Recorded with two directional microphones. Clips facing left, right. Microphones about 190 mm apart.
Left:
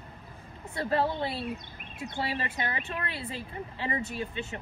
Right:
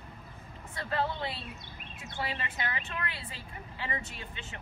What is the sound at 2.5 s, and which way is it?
Speech, 25° left (ahead or behind).